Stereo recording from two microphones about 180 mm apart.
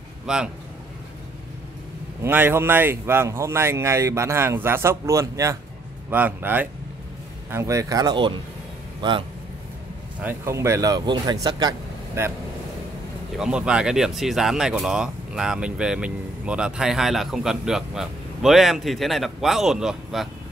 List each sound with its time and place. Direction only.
0.3 s speech: 5° right (ahead or behind)
2.2 s speech: 10° right (ahead or behind)
10.2 s speech: 15° right (ahead or behind)
13.4 s speech: 5° right (ahead or behind)